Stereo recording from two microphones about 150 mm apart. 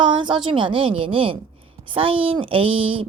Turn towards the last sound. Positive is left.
turn(degrees=-35)  # may be behind; listen again after turning